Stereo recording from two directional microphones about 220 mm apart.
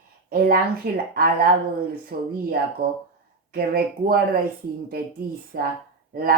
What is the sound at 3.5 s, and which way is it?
Speech, 45° right (ahead or behind).